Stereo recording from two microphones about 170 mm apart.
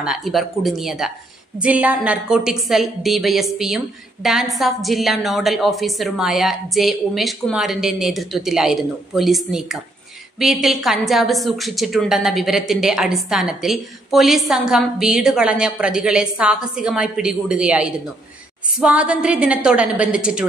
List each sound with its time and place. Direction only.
0.0 s a woman's voice: centre (ahead or behind)